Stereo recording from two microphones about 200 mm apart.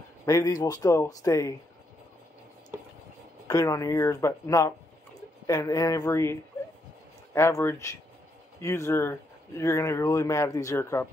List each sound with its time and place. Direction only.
0.2 s speech: 15° left (ahead or behind)
3.4 s speech: 15° left (ahead or behind)
7.3 s speech: 10° left (ahead or behind)